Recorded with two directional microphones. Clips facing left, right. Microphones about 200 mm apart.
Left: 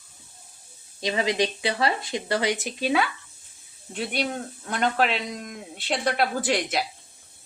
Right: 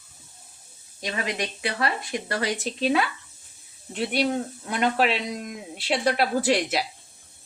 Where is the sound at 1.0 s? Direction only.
25° left (ahead or behind).